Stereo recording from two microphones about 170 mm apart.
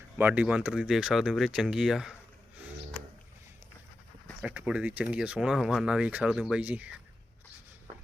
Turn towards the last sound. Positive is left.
turn(degrees=-10)  # may be behind; listen again after turning